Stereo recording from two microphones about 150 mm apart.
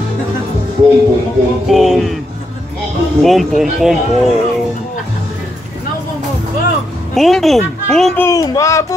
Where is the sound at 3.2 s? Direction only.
Centre (ahead or behind).